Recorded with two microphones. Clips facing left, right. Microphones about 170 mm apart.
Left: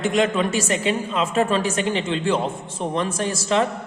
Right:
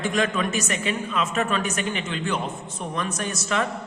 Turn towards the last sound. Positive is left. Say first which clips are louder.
# left 5 dB
turn(degrees=30)  # may be behind; listen again after turning